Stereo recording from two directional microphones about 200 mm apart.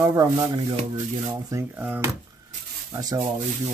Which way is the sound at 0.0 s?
15° right (ahead or behind).